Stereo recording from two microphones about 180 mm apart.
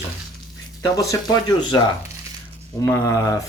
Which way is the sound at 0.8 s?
20° left (ahead or behind).